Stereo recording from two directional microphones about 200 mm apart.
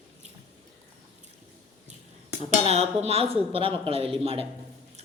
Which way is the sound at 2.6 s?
30° right (ahead or behind).